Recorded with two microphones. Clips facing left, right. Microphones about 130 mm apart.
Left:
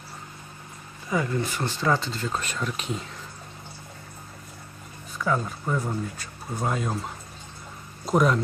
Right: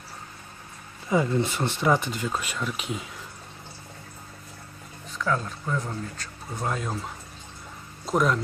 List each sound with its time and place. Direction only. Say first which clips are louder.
1.1 s speech: right 3 dB; 20° right (ahead or behind); by 3.1 s 5° right (ahead or behind)
5.1 s speech: left 1 dB; 5° left (ahead or behind)